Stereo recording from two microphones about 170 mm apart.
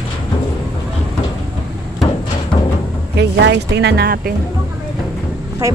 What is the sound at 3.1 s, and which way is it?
Speech, 90° right.